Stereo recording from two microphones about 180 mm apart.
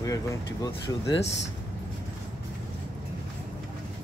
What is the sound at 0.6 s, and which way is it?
Speech, 20° left (ahead or behind).